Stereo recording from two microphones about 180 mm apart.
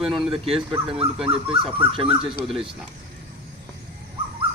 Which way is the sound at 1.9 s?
30° right (ahead or behind).